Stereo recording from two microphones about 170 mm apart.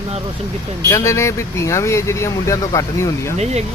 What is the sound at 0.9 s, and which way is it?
Speech, 15° left (ahead or behind).